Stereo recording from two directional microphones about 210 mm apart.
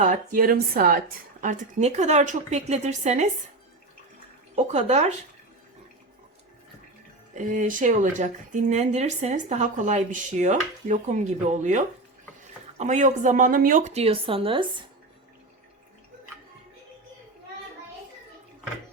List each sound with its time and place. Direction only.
0.0 s speech: 40° right (ahead or behind)
4.5 s speech: 35° right (ahead or behind)
7.3 s speech: 35° right (ahead or behind)